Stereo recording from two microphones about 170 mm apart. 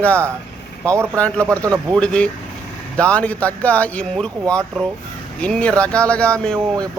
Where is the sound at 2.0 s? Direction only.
5° left (ahead or behind).